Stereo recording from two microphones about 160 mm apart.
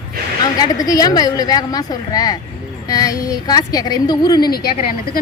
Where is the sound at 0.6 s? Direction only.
25° left (ahead or behind).